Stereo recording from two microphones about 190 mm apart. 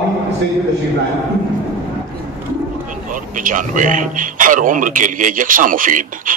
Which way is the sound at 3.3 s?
45° right (ahead or behind).